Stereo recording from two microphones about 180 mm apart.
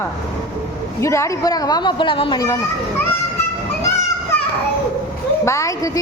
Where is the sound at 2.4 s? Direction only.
15° left (ahead or behind).